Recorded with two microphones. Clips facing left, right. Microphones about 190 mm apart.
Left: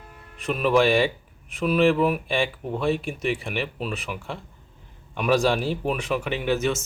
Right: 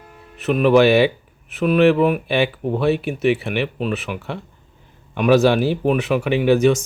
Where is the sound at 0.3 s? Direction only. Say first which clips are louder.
Right 7 dB; centre (ahead or behind).